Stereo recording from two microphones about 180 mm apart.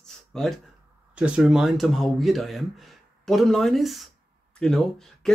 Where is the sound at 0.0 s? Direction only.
Centre (ahead or behind).